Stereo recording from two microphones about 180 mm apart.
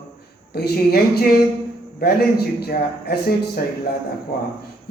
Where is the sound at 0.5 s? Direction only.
60° left (ahead or behind).